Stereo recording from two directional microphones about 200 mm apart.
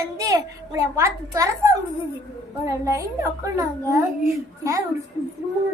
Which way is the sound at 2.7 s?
15° right (ahead or behind).